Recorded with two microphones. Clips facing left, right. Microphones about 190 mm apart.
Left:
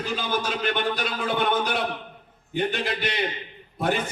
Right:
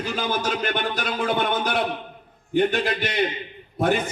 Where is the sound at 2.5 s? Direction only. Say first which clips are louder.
Right 5 dB; 50° right (ahead or behind).